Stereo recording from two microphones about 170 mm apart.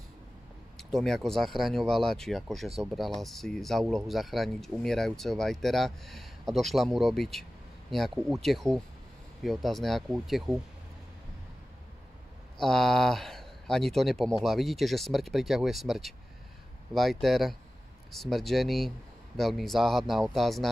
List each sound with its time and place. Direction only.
0.7 s speech: centre (ahead or behind)
12.5 s speech: centre (ahead or behind)